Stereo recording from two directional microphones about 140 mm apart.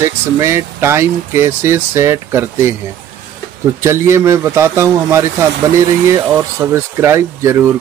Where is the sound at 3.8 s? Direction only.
20° right (ahead or behind).